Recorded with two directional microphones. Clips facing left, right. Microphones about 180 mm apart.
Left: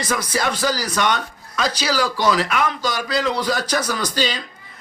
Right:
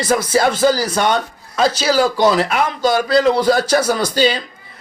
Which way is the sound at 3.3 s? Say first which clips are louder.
Right 7 dB; 30° right (ahead or behind).